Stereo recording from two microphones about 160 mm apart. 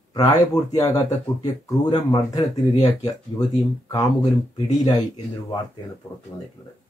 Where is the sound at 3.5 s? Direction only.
25° left (ahead or behind).